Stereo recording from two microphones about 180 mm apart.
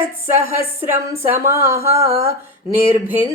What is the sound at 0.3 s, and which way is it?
Female singing, 15° right (ahead or behind).